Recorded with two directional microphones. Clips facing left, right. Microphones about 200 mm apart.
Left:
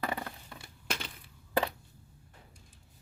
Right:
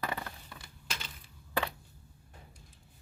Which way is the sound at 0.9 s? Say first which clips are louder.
Left 6 dB; 60° left (ahead or behind).